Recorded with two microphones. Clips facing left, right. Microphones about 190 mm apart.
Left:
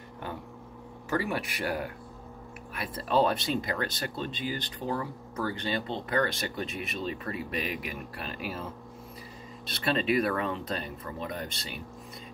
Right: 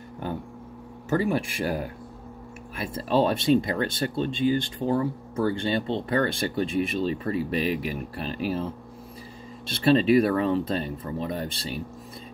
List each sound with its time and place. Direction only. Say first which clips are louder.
1.1 s speech: right 6 dB; 25° right (ahead or behind)
2.7 s speech: right 3 dB; 25° right (ahead or behind)
9.7 s speech: right 8 dB; 30° right (ahead or behind)